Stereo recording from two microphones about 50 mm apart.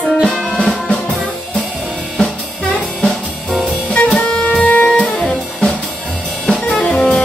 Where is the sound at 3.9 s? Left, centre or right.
Centre.